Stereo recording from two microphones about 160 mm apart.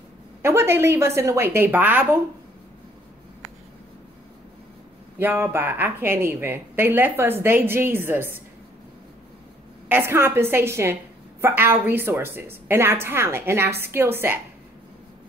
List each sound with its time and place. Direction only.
0.4 s speech: 15° right (ahead or behind)
5.2 s speech: 15° right (ahead or behind)
9.8 s speech: 15° right (ahead or behind)